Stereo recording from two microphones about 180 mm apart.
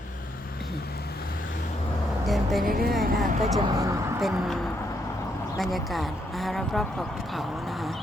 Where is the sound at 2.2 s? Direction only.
Centre (ahead or behind).